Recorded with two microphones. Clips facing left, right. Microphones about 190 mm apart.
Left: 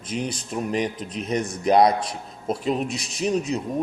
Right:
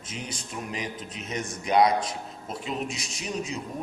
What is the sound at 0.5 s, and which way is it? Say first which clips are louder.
A man's voice: left 9 dB; 45° left (ahead or behind).